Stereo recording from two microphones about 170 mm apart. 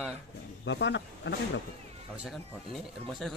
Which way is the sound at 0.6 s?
90° left.